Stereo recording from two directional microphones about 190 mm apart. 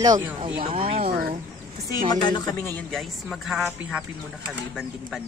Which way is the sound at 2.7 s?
Centre (ahead or behind).